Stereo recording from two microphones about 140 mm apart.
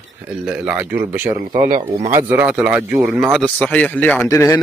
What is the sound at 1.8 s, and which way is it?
Speech, 50° right (ahead or behind).